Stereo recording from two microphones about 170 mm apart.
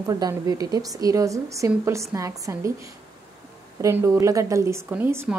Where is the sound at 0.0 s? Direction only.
20° right (ahead or behind).